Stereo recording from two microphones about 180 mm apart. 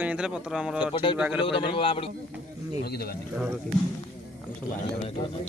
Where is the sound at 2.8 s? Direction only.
60° left (ahead or behind).